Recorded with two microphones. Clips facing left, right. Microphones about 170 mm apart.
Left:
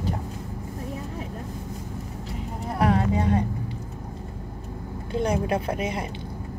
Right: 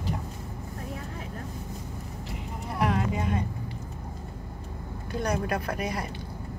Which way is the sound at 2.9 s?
35° left (ahead or behind).